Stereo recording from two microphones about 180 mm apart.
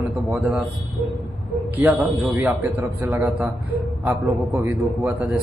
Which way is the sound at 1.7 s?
10° right (ahead or behind).